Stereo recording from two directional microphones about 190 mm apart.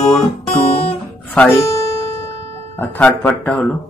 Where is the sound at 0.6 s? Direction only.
30° left (ahead or behind).